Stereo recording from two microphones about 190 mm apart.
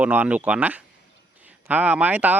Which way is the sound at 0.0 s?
10° right (ahead or behind).